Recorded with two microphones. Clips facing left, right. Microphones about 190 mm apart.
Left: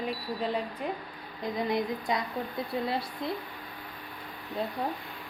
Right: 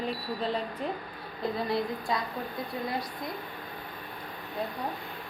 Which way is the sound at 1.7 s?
20° left (ahead or behind).